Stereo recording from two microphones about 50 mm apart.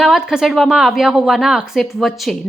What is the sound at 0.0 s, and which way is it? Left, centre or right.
A woman's voice, centre.